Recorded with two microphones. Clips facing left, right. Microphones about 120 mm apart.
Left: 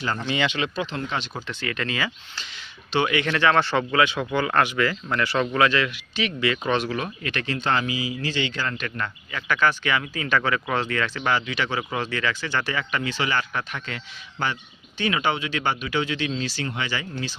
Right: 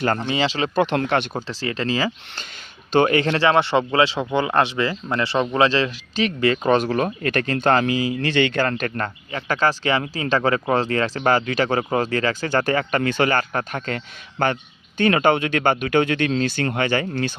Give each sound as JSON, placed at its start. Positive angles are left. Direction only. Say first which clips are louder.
{"t": 0.2, "sound": "speech", "louder": "right 3 dB", "side_deg": -30}
{"t": 0.8, "sound": "speech", "louder": "right 9 dB", "side_deg": -65}
{"t": 1.5, "sound": "speech", "louder": "right 5 dB", "side_deg": -30}
{"t": 2.9, "sound": "speech", "louder": "right 6 dB", "side_deg": -45}